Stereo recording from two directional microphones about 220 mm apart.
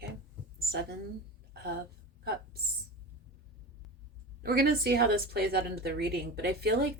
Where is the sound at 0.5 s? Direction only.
45° right (ahead or behind).